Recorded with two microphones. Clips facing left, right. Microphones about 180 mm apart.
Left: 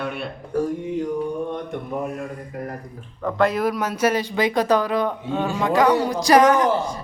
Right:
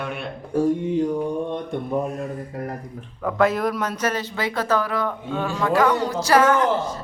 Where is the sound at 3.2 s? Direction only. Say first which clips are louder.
Even; centre (ahead or behind).